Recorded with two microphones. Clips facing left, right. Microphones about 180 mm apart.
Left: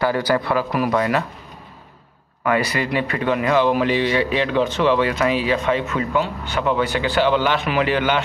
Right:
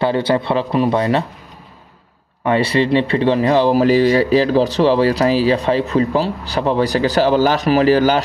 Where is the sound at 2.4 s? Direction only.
30° right (ahead or behind).